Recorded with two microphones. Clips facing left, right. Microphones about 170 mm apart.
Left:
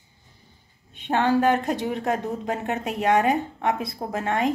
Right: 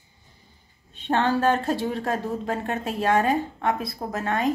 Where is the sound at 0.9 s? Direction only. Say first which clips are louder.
Left 1 dB; 15° left (ahead or behind).